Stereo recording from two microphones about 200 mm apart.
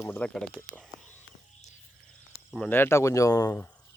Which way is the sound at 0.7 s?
5° left (ahead or behind).